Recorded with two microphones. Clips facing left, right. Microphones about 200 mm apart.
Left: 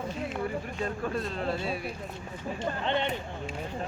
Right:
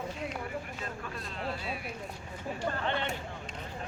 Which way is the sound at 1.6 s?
35° left (ahead or behind).